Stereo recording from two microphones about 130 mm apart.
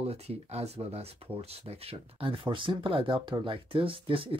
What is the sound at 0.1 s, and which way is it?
Speech, 55° right (ahead or behind).